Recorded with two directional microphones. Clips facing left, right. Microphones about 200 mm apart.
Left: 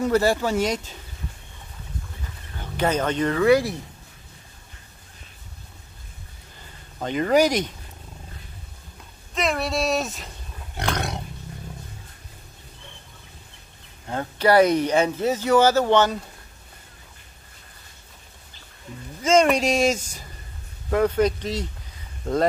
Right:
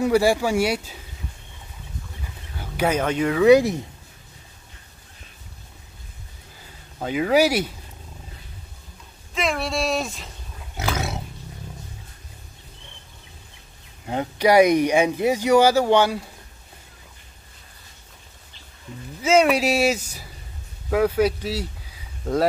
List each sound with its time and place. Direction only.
0.0 s speech: 10° right (ahead or behind)
2.5 s speech: 10° right (ahead or behind)
3.4 s speech: 20° right (ahead or behind)
7.0 s speech: 5° right (ahead or behind)
9.3 s a sound: centre (ahead or behind)
10.8 s roar: 5° right (ahead or behind)
14.0 s speech: 15° right (ahead or behind)
19.2 s speech: 5° right (ahead or behind)